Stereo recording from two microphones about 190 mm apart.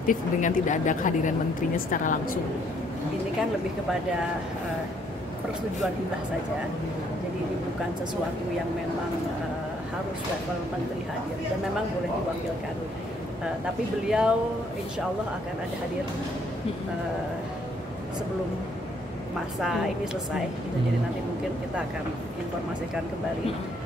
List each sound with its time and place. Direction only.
0.0 s speech: 45° left (ahead or behind)
14.0 s speech: 5° right (ahead or behind)